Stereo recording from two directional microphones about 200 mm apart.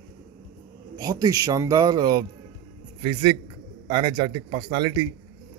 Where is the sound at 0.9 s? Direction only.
20° right (ahead or behind).